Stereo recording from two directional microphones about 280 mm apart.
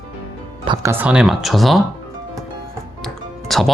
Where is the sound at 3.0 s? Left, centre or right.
Centre.